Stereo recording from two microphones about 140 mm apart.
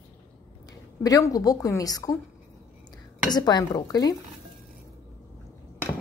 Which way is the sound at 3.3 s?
30° left (ahead or behind).